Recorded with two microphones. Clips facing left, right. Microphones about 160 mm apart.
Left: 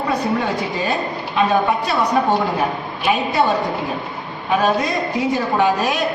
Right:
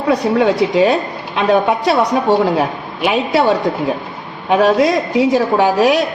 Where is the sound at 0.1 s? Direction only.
90° right.